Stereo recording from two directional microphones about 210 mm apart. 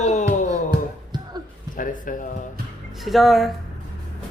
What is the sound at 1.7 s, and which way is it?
Speech, 40° left (ahead or behind).